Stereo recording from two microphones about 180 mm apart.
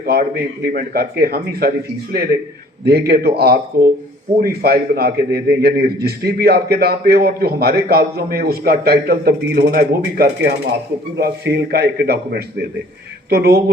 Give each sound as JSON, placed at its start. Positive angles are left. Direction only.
{"t": 0.0, "sound": "a man's voice", "side_deg": -60}
{"t": 2.8, "sound": "a man's voice", "side_deg": -60}
{"t": 11.5, "sound": "a man's voice", "side_deg": -65}